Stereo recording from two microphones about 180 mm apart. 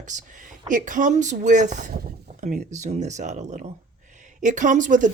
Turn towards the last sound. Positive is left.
turn(degrees=-45)  # may be behind; listen again after turning